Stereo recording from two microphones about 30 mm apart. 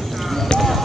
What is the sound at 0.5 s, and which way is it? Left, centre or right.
Basketball bounce, centre.